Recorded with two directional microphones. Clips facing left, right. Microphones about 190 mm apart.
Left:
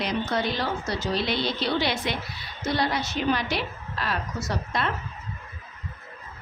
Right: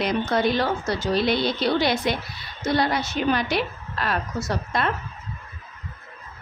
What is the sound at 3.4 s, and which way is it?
A woman's voice, 55° right (ahead or behind).